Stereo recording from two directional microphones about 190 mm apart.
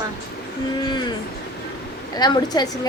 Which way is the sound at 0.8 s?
25° left (ahead or behind).